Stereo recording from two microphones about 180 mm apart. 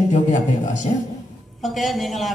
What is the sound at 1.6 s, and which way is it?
Speech, centre (ahead or behind).